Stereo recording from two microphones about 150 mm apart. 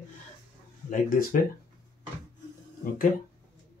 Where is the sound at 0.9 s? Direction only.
70° left (ahead or behind).